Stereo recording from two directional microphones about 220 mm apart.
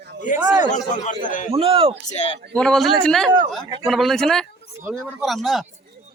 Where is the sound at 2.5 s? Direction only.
5° left (ahead or behind).